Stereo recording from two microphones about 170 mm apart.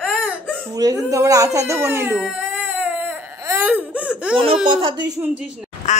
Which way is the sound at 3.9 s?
10° right (ahead or behind).